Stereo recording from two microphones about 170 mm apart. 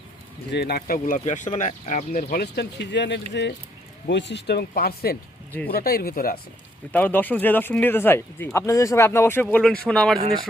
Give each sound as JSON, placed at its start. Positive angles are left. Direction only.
{"t": 0.5, "sound": "speech", "side_deg": 70}
{"t": 6.9, "sound": "speech", "side_deg": 10}